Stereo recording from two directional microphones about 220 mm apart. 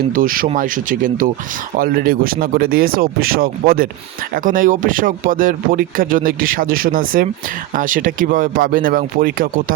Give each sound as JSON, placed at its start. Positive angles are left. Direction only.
{"t": 0.1, "sound": "speech", "side_deg": -40}